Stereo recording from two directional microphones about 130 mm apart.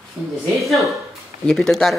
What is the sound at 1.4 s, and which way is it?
Speech, 5° left (ahead or behind).